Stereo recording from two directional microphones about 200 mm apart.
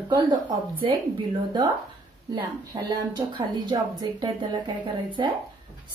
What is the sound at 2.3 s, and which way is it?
Speech, 20° right (ahead or behind).